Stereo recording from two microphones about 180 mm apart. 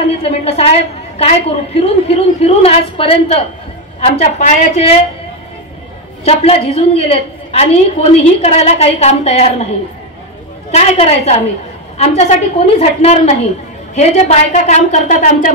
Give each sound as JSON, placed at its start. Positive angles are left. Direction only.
{"t": 0.0, "sound": "a woman's voice", "side_deg": 35}
{"t": 6.2, "sound": "a woman's voice", "side_deg": 35}
{"t": 10.7, "sound": "a woman's voice", "side_deg": 35}